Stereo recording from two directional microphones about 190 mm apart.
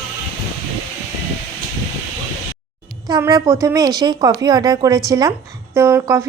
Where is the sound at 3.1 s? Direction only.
20° right (ahead or behind).